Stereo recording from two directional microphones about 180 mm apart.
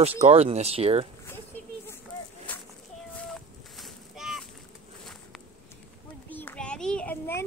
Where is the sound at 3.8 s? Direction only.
Centre (ahead or behind).